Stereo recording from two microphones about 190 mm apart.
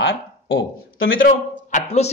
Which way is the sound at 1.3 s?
40° left (ahead or behind).